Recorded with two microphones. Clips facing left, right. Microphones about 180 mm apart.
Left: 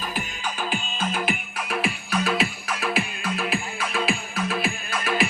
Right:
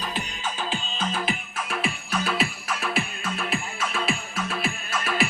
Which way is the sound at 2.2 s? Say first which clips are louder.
Left 1 dB; 5° left (ahead or behind).